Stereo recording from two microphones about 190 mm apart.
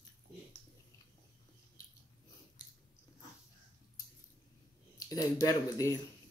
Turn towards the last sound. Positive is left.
turn(degrees=20)  # may be behind; listen again after turning